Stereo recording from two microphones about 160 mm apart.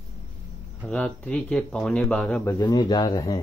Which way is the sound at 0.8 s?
10° left (ahead or behind).